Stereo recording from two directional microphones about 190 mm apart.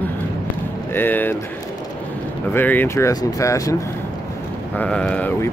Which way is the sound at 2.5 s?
10° left (ahead or behind).